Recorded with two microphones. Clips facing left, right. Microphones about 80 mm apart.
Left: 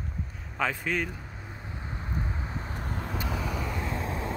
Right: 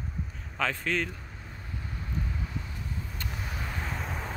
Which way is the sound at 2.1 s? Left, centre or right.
Left.